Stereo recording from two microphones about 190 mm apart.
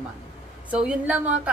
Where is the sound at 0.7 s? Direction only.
5° right (ahead or behind).